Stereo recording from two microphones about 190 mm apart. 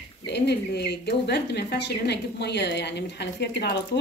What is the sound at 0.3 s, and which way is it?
A woman's voice, 60° left (ahead or behind).